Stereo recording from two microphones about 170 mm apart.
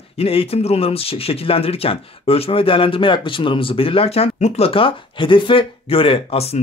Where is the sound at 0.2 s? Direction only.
35° left (ahead or behind).